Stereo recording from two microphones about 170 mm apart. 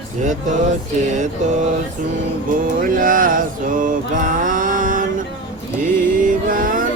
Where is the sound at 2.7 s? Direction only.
55° right (ahead or behind).